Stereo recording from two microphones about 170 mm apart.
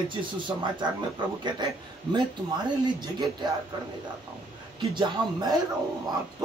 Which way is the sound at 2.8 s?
25° right (ahead or behind).